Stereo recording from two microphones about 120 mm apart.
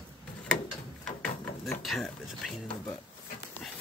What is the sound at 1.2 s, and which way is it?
Music, centre (ahead or behind).